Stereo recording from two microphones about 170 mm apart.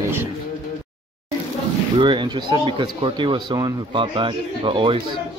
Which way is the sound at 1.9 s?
30° right (ahead or behind).